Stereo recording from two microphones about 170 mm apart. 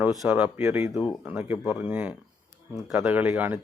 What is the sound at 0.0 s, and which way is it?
Speech, centre (ahead or behind).